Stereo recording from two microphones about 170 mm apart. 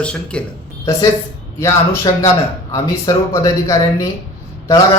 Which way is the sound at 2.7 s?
20° left (ahead or behind).